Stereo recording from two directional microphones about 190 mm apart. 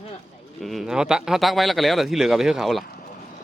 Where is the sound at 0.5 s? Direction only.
Centre (ahead or behind).